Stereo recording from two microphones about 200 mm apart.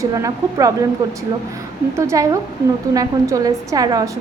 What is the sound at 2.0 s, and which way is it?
A woman's voice, 15° right (ahead or behind).